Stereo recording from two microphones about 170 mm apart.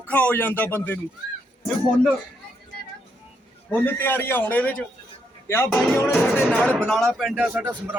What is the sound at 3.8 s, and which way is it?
Speech, 10° left (ahead or behind).